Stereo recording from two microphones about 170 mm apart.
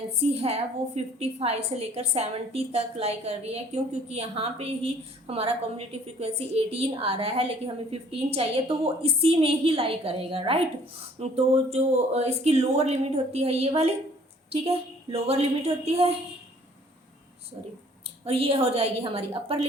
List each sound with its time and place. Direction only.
0.2 s a woman's voice: 35° right (ahead or behind)
18.3 s a woman's voice: 35° right (ahead or behind)